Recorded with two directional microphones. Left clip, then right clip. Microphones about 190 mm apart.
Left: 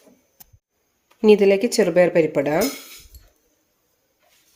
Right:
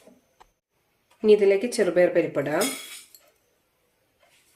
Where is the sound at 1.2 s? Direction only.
40° left (ahead or behind).